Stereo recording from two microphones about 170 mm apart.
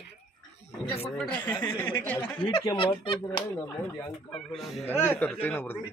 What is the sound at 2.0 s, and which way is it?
Speech, 10° left (ahead or behind).